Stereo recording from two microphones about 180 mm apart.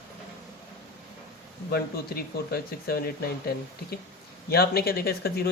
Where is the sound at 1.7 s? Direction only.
60° left (ahead or behind).